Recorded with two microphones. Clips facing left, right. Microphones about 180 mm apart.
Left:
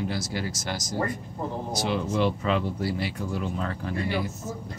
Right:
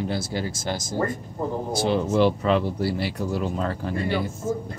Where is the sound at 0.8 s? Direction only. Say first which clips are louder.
Right 2 dB; 50° right (ahead or behind).